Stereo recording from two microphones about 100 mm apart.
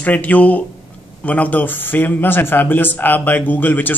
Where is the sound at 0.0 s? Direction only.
15° left (ahead or behind).